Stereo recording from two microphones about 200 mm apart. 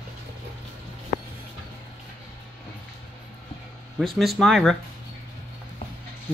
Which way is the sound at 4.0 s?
Centre (ahead or behind).